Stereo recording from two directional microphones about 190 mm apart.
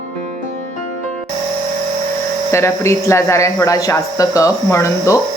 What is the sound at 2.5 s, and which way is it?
Speech, 15° left (ahead or behind).